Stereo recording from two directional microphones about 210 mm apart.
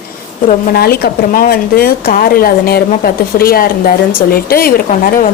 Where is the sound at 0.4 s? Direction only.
45° left (ahead or behind).